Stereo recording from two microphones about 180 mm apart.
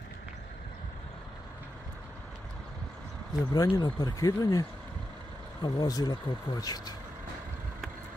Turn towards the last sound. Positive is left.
turn(degrees=20)  # may be behind; listen again after turning